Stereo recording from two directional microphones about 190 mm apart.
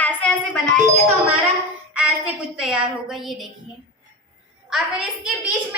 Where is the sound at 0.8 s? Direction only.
40° right (ahead or behind).